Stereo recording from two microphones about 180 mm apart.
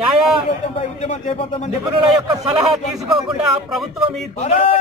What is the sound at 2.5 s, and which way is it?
A man's voice, centre (ahead or behind).